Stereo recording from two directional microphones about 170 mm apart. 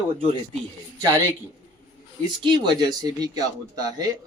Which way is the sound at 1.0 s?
15° right (ahead or behind).